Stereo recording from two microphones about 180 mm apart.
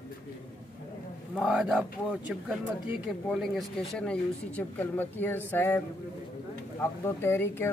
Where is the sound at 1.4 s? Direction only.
Centre (ahead or behind).